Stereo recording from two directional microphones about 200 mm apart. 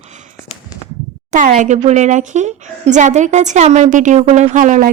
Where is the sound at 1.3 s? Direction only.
40° right (ahead or behind).